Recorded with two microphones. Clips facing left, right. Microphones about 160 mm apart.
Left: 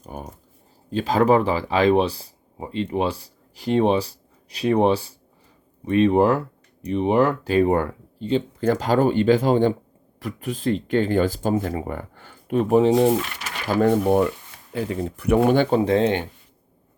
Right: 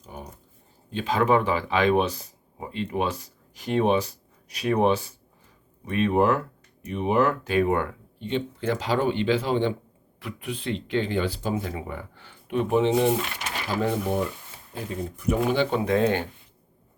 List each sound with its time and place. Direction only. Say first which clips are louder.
0.0 s a sound: left 5 dB; 50° left (ahead or behind)
0.9 s speech: left 4 dB; 40° left (ahead or behind)
13.7 s speech: left 8 dB; 55° left (ahead or behind)
14.7 s speech: left 6 dB; 75° left (ahead or behind); by 15.6 s 60° left (ahead or behind)
15.7 s speech: left 4 dB; 30° left (ahead or behind)